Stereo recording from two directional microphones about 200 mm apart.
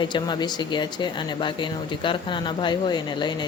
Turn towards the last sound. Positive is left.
turn(degrees=20)  # may be behind; listen again after turning